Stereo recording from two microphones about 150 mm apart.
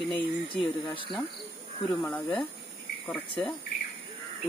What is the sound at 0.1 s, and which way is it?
Speech, 30° left (ahead or behind).